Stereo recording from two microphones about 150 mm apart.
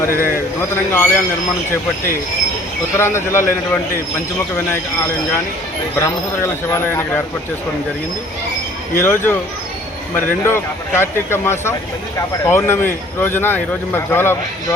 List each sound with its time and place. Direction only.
0.0 s speech: 15° left (ahead or behind)
3.0 s speech: 15° left (ahead or behind)
6.0 s speech: 20° left (ahead or behind)
9.0 s speech: 15° left (ahead or behind)